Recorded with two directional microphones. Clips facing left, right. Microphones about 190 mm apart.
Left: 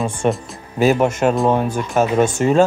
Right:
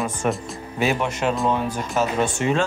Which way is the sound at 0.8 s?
40° left (ahead or behind).